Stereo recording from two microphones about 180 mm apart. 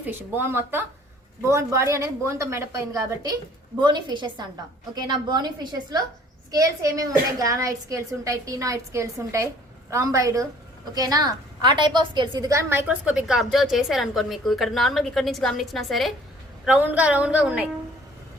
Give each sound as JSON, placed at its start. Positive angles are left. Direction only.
{"t": 0.0, "sound": "a woman's voice", "side_deg": -10}